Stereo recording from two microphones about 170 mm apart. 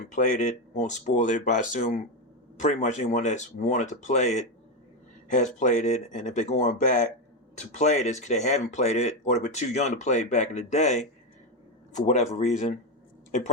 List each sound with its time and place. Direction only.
0.2 s speech: 50° left (ahead or behind)